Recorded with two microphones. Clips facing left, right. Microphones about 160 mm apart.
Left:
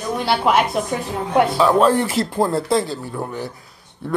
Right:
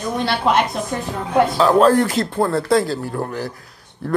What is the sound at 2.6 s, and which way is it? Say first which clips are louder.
Speech: right 3 dB; centre (ahead or behind).